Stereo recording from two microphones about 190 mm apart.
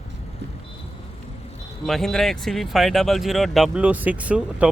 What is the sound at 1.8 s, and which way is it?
Speech, centre (ahead or behind).